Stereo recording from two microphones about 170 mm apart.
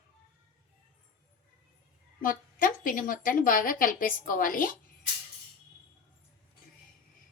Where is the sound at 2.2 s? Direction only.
55° left (ahead or behind).